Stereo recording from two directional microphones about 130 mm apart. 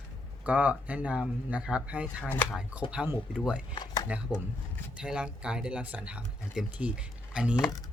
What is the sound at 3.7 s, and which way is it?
Speech, 30° left (ahead or behind).